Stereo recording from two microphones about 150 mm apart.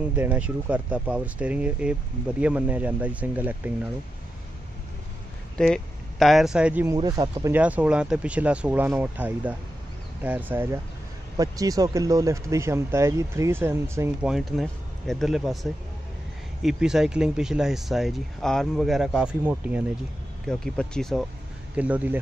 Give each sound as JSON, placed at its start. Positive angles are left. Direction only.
{"t": 0.1, "sound": "speech", "side_deg": -10}
{"t": 5.6, "sound": "speech", "side_deg": 5}
{"t": 7.0, "sound": "speech", "side_deg": -25}
{"t": 7.5, "sound": "speech", "side_deg": -10}
{"t": 11.3, "sound": "speech", "side_deg": -25}
{"t": 14.2, "sound": "speech", "side_deg": 0}
{"t": 20.4, "sound": "speech", "side_deg": 5}
{"t": 21.7, "sound": "speech", "side_deg": -10}